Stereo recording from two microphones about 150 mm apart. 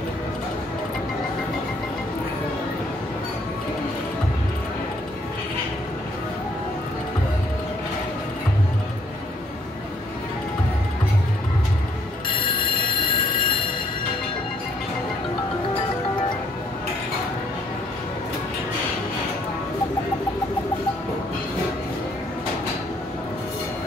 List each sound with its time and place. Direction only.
12.8 s train: 65° left (ahead or behind)